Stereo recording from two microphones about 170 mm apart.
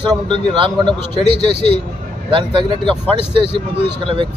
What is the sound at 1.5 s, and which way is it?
Speech, 40° left (ahead or behind).